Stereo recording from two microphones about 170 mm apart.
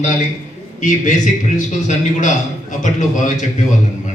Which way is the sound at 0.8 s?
45° left (ahead or behind).